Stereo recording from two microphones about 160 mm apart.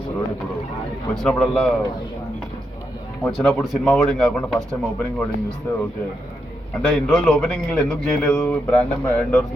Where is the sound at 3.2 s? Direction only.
Centre (ahead or behind).